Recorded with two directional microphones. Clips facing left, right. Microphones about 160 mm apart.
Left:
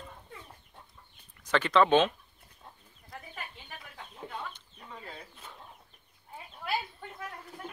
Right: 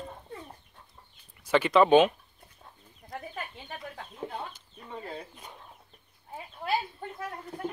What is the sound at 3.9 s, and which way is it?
Chicken, 40° right (ahead or behind).